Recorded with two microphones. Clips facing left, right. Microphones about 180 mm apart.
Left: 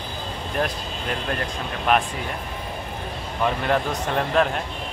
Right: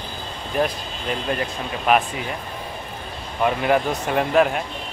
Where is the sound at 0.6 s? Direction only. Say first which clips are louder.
Right 4 dB; 5° right (ahead or behind).